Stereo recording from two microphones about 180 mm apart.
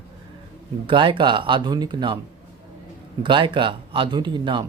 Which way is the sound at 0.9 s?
25° right (ahead or behind).